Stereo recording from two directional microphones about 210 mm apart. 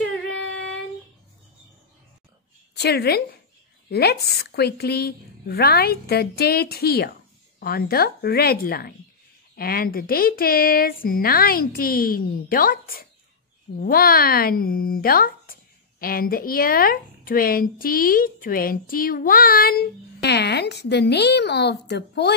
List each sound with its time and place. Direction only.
2.7 s a woman's voice: 50° left (ahead or behind)